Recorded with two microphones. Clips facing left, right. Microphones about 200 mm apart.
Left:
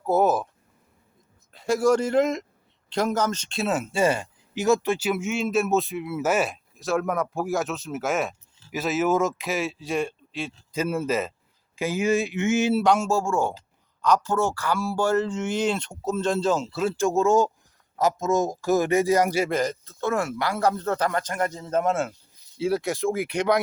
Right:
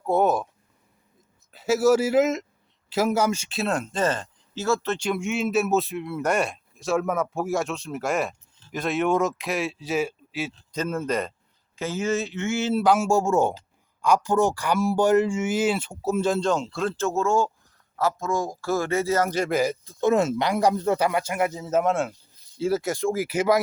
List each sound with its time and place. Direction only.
0.0 s speech: centre (ahead or behind)
1.5 s speech: 5° right (ahead or behind)
10.7 s speech: 10° left (ahead or behind)
12.7 s speech: 5° right (ahead or behind)
13.1 s speech: 20° right (ahead or behind)
16.4 s speech: 5° left (ahead or behind)
19.5 s speech: 10° right (ahead or behind)